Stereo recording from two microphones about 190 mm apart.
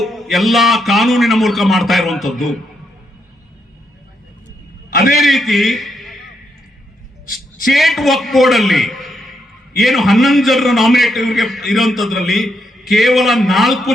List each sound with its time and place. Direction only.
0.0 s a man's voice: centre (ahead or behind)
4.9 s a sound: 50° left (ahead or behind)
5.1 s a man's voice: centre (ahead or behind)
7.7 s a man's voice: centre (ahead or behind)